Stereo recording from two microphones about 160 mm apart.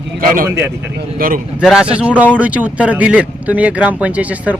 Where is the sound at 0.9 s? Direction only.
60° right (ahead or behind).